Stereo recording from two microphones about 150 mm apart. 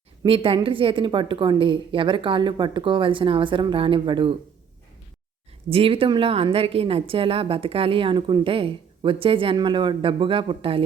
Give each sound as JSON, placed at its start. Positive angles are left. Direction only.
{"t": 0.2, "sound": "a woman's voice", "side_deg": -40}
{"t": 5.6, "sound": "a woman's voice", "side_deg": -40}